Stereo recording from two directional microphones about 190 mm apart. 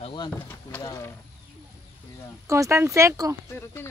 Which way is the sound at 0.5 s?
10° left (ahead or behind).